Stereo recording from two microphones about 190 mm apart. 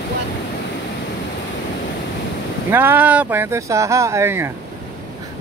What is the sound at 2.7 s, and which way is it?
Speech, 10° right (ahead or behind).